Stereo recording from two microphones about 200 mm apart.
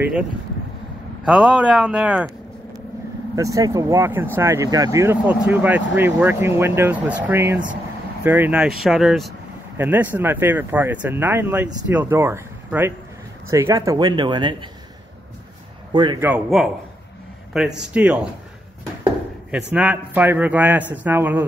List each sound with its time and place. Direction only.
0.0 s speech: 5° right (ahead or behind)
3.3 s speech: 15° right (ahead or behind)
15.9 s speech: 20° right (ahead or behind)
16.2 s speech: 5° right (ahead or behind)
17.7 s speech: 5° right (ahead or behind)
19.5 s speech: 5° right (ahead or behind)